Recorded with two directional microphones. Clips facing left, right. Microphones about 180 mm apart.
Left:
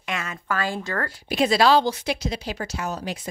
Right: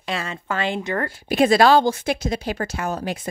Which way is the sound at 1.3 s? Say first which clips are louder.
Right 4 dB; 50° right (ahead or behind).